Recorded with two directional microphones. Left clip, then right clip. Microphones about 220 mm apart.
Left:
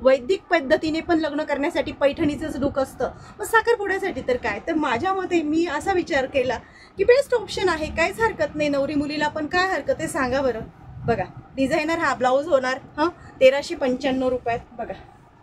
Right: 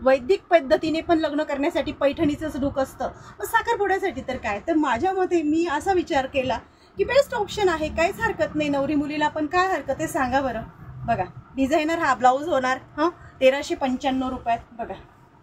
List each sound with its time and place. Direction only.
0.0 s a woman's voice: 30° left (ahead or behind)